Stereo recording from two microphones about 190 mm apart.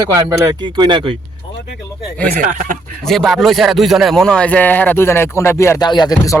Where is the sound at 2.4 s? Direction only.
40° right (ahead or behind).